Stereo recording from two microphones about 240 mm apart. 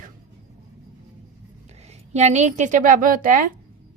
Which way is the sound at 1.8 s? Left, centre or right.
Right.